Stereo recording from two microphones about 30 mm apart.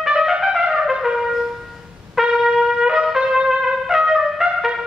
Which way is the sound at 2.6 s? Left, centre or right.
Centre.